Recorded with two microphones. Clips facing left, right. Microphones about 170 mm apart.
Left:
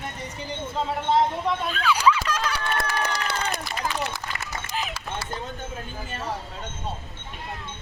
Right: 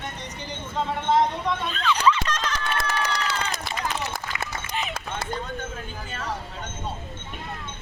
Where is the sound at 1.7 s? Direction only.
5° left (ahead or behind).